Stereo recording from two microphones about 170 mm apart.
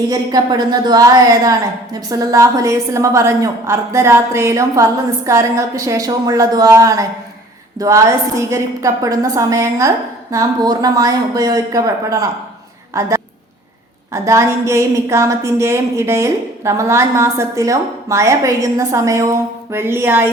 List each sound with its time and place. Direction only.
0.1 s a woman's voice: 25° right (ahead or behind)
12.9 s a sound: 20° right (ahead or behind)
14.1 s a woman's voice: 15° right (ahead or behind)